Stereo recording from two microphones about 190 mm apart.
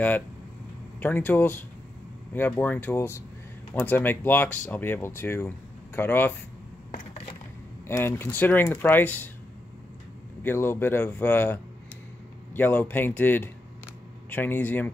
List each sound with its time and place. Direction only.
0.9 s speech: 10° left (ahead or behind)
6.9 s crushing: 35° left (ahead or behind)
7.8 s speech: 10° left (ahead or behind)
10.4 s speech: 10° left (ahead or behind)